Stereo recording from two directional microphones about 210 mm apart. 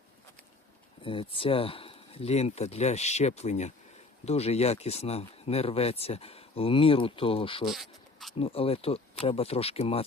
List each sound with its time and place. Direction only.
1.0 s speech: 25° left (ahead or behind)
7.7 s insect: centre (ahead or behind)
8.4 s speech: 25° left (ahead or behind)